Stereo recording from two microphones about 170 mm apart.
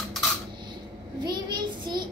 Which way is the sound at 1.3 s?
25° right (ahead or behind).